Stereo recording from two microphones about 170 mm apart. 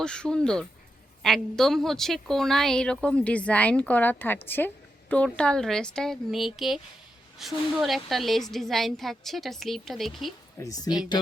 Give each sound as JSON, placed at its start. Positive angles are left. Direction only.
{"t": 0.0, "sound": "a woman's voice", "side_deg": 5}
{"t": 10.6, "sound": "speech", "side_deg": 20}